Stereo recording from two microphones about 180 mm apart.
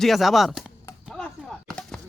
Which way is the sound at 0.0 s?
Centre (ahead or behind).